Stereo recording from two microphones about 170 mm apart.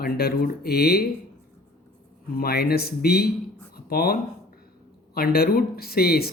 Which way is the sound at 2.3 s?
65° left (ahead or behind).